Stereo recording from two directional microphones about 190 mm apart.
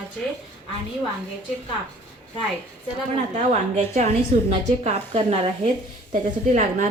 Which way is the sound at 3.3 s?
35° right (ahead or behind).